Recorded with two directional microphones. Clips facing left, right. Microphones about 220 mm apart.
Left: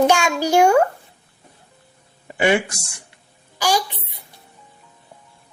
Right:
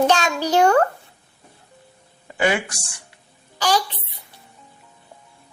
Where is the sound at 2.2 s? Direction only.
25° left (ahead or behind).